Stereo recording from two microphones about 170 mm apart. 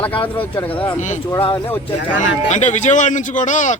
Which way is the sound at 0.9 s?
45° left (ahead or behind).